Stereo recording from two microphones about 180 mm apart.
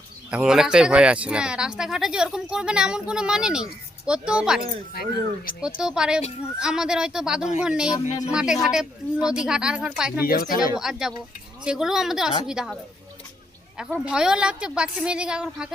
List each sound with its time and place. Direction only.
0.3 s speech: 5° right (ahead or behind)
10.2 s speech: 55° left (ahead or behind)
10.8 s speech: 5° right (ahead or behind)
14.0 s speech: 5° right (ahead or behind)